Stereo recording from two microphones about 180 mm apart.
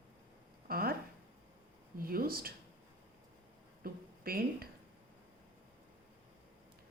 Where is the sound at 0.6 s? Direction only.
55° right (ahead or behind).